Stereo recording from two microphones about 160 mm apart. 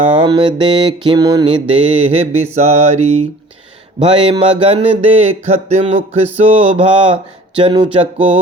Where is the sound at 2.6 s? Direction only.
45° right (ahead or behind).